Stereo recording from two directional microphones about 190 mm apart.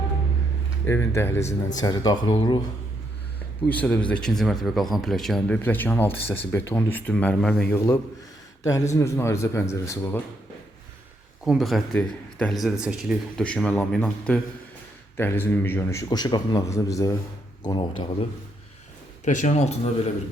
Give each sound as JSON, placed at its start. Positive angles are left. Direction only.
{"t": 0.9, "sound": "speech", "side_deg": 10}
{"t": 3.7, "sound": "speech", "side_deg": 10}
{"t": 8.6, "sound": "speech", "side_deg": 15}
{"t": 11.4, "sound": "speech", "side_deg": 0}
{"t": 19.2, "sound": "speech", "side_deg": 40}